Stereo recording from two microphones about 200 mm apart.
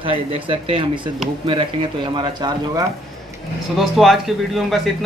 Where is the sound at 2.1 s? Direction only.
20° right (ahead or behind).